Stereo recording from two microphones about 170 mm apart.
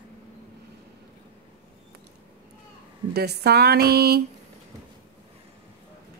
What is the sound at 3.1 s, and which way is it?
Speech, 70° right (ahead or behind).